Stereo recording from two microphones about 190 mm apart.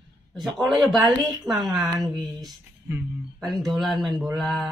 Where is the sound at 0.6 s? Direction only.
Centre (ahead or behind).